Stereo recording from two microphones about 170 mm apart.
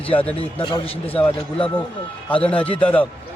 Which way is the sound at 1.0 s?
10° left (ahead or behind).